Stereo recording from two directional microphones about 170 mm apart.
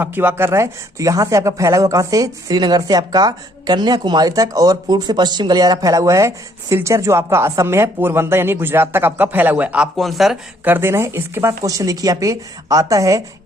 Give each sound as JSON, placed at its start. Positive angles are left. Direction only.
{"t": 0.0, "sound": "speech", "side_deg": -10}